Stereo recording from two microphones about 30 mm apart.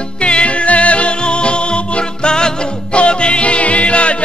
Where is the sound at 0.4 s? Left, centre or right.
Left.